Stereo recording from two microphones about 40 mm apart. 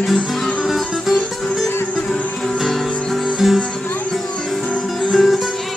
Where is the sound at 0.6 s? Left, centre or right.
Centre.